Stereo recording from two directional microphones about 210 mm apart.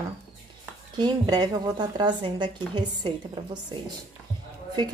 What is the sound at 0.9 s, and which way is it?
A woman's voice, 20° right (ahead or behind).